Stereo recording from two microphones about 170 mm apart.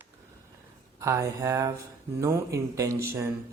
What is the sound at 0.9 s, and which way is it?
Speech, 15° right (ahead or behind).